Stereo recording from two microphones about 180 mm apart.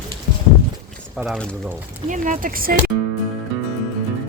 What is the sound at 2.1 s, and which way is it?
Speech, 45° right (ahead or behind).